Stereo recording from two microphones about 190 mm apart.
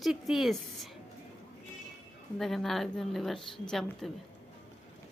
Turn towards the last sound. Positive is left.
turn(degrees=0)  # may be behind; listen again after turning